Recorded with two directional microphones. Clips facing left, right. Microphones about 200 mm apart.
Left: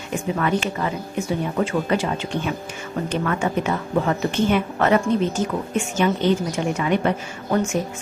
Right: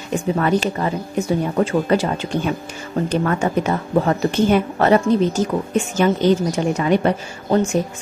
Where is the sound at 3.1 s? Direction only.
40° right (ahead or behind).